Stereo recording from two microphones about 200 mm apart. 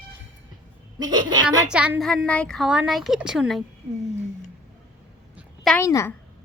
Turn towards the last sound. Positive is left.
turn(degrees=15)  # may be behind; listen again after turning